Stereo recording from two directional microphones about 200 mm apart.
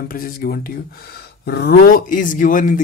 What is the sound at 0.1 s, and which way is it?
Speech, 45° left (ahead or behind).